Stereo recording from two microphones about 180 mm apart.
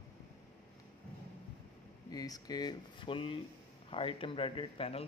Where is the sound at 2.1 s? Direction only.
20° left (ahead or behind).